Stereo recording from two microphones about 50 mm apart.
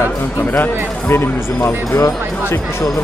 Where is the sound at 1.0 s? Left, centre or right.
Left.